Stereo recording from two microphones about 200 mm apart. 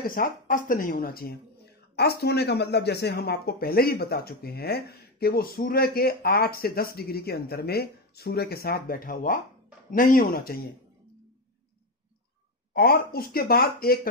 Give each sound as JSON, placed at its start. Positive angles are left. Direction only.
{"t": 0.0, "sound": "speech", "side_deg": 45}
{"t": 12.7, "sound": "speech", "side_deg": 50}